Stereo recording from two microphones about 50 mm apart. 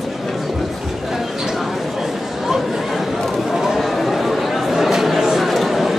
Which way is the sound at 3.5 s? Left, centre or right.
Centre.